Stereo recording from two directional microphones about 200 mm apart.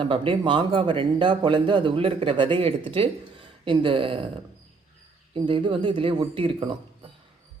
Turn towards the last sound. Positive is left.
turn(degrees=-25)  # may be behind; listen again after turning